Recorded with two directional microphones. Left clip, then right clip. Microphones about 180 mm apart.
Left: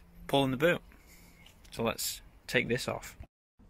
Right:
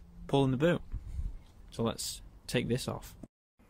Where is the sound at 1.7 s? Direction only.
15° right (ahead or behind).